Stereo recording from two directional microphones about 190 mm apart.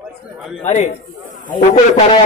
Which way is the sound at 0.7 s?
40° left (ahead or behind).